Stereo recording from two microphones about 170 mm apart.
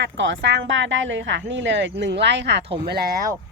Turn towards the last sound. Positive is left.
turn(degrees=-65)  # may be behind; listen again after turning